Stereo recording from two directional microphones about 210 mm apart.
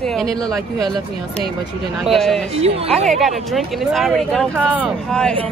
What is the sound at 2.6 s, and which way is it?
Speech, 30° right (ahead or behind).